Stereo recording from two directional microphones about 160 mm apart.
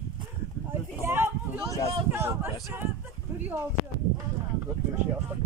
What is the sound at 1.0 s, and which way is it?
Speech, 15° right (ahead or behind).